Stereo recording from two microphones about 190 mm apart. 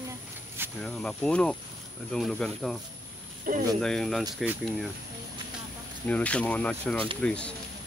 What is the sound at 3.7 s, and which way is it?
Speech, 5° left (ahead or behind).